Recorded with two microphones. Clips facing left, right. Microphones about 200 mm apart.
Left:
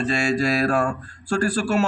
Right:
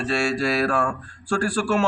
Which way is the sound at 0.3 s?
45° left (ahead or behind).